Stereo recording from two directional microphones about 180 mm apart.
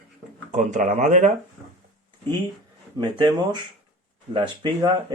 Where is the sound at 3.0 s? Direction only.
25° right (ahead or behind).